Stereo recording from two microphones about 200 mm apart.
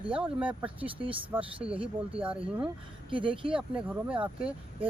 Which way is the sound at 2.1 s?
5° right (ahead or behind).